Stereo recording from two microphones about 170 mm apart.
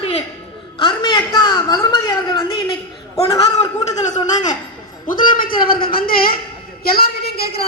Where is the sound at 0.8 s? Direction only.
25° left (ahead or behind).